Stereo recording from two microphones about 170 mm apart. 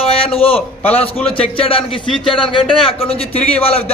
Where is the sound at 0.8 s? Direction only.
10° left (ahead or behind).